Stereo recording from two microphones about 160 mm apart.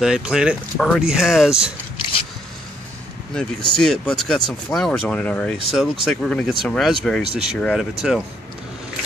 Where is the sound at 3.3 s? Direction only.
5° left (ahead or behind).